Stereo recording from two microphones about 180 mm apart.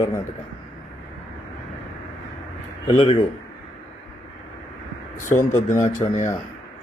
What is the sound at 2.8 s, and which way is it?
Speech, 25° left (ahead or behind).